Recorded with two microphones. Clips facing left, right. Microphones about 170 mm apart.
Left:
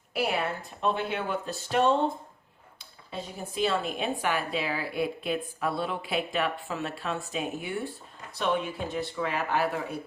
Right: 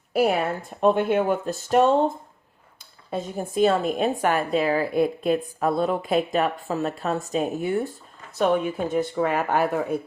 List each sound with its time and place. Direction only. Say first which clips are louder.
0.1 s a woman's voice: right 7 dB; 45° right (ahead or behind)
3.1 s a woman's voice: right 8 dB; 45° right (ahead or behind)